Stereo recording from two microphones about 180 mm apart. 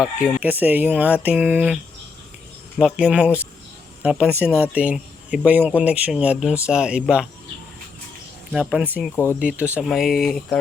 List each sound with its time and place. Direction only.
0.3 s speech: 10° right (ahead or behind)
8.5 s speech: 5° right (ahead or behind)
9.1 s speech: 15° left (ahead or behind)
9.4 s speech: 10° right (ahead or behind)